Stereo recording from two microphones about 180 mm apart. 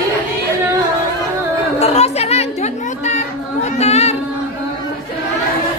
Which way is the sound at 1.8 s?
35° left (ahead or behind).